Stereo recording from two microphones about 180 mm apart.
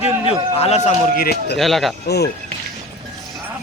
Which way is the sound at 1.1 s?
60° left (ahead or behind).